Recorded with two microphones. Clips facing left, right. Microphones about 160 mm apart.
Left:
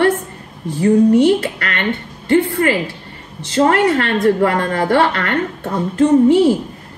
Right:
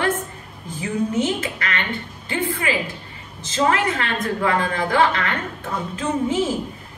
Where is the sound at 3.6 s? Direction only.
60° left (ahead or behind).